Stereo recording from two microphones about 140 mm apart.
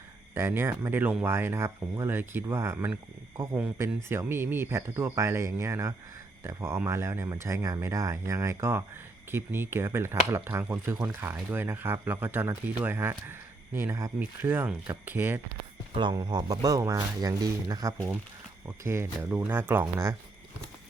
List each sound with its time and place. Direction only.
0.3 s speech: 15° right (ahead or behind)
16.0 s speech: 30° right (ahead or behind)